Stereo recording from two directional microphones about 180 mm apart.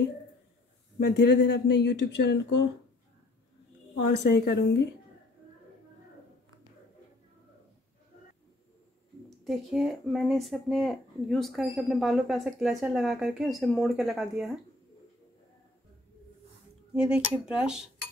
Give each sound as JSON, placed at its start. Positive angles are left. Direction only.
{"t": 0.9, "sound": "speech", "side_deg": 70}
{"t": 4.0, "sound": "speech", "side_deg": 70}
{"t": 9.4, "sound": "speech", "side_deg": 0}
{"t": 16.9, "sound": "speech", "side_deg": -5}